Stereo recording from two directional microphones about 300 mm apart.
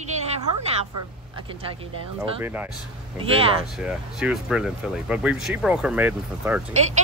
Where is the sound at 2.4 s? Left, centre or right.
Centre.